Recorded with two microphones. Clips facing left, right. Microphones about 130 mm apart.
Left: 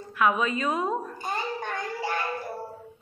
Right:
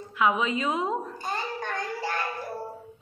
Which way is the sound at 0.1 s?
20° right (ahead or behind).